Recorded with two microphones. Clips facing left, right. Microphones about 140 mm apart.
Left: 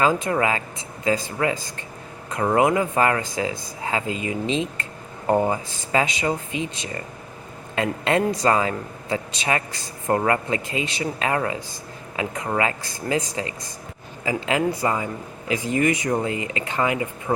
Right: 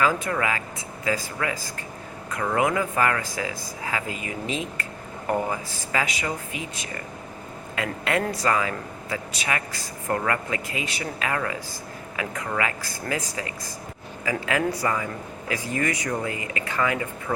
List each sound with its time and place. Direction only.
0.0 s speech: 25° left (ahead or behind)